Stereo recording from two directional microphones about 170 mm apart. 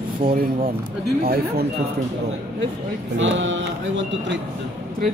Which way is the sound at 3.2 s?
90° right.